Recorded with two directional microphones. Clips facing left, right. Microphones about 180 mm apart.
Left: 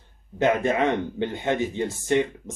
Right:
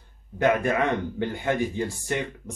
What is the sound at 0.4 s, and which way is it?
Speech, 20° left (ahead or behind).